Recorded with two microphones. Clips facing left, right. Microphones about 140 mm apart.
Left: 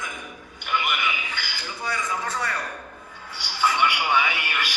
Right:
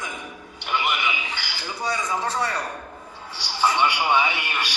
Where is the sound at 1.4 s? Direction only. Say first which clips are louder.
Right 2 dB; 25° right (ahead or behind).